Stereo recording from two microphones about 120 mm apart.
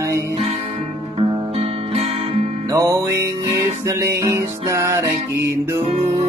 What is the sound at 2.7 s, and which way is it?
Music, 25° right (ahead or behind).